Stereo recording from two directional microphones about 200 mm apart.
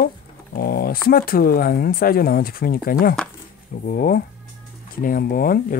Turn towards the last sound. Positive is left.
turn(degrees=45)  # may be behind; listen again after turning